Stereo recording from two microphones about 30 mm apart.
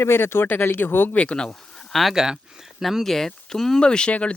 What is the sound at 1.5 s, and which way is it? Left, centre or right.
Speech, centre.